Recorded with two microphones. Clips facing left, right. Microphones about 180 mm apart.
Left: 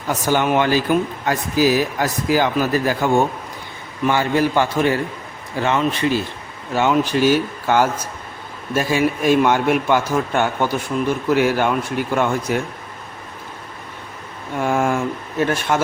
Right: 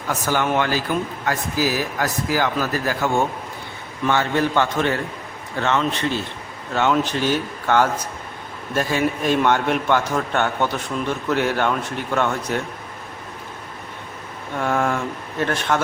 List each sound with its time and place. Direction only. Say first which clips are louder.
0.1 s speech: left 3 dB; 20° left (ahead or behind)
14.6 s speech: left 3 dB; 10° left (ahead or behind)